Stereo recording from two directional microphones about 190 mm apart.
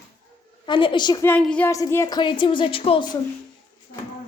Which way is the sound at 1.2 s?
10° left (ahead or behind).